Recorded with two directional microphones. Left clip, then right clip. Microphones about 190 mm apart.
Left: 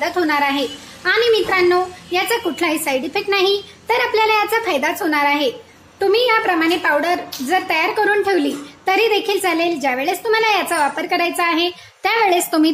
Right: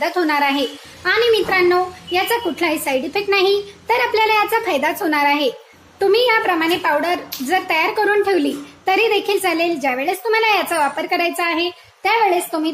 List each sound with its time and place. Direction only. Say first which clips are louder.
0.0 s a woman's voice: even; centre (ahead or behind)
12.0 s a woman's voice: even; 20° left (ahead or behind)